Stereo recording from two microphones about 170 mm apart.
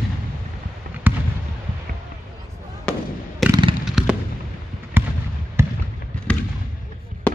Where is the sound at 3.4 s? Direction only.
Centre (ahead or behind).